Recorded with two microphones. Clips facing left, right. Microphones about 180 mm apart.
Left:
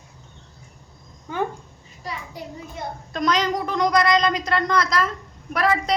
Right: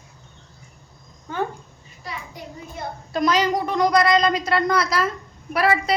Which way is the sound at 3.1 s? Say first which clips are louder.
Right 2 dB; 5° right (ahead or behind).